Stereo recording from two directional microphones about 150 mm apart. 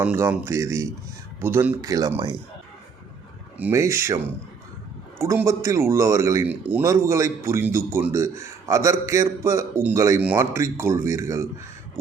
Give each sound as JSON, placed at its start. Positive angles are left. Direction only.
{"t": 0.0, "sound": "a man's voice", "side_deg": -10}
{"t": 3.6, "sound": "speech", "side_deg": -15}
{"t": 5.2, "sound": "a man's voice", "side_deg": -20}